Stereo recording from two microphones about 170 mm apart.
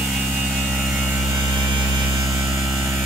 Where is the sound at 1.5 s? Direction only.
25° right (ahead or behind).